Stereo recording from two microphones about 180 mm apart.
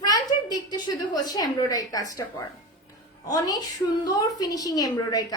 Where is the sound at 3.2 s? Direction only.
20° left (ahead or behind).